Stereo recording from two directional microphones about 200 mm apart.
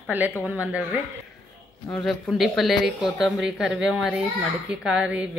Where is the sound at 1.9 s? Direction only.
Centre (ahead or behind).